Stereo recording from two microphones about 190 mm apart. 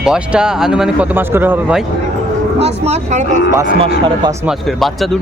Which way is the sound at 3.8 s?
25° right (ahead or behind).